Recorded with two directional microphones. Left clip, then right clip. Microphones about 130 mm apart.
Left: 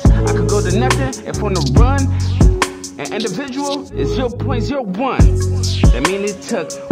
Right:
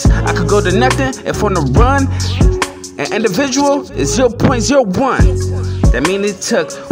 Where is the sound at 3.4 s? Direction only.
40° right (ahead or behind).